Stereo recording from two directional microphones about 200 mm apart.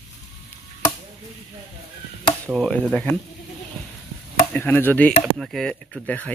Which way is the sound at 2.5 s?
Centre (ahead or behind).